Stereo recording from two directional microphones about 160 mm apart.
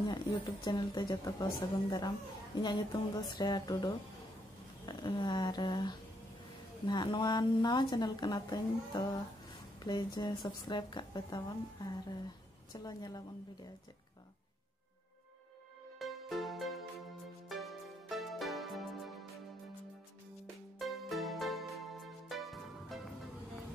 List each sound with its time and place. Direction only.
0.0 s a woman's voice: 25° left (ahead or behind)
16.0 s music: centre (ahead or behind)
20.8 s music: centre (ahead or behind)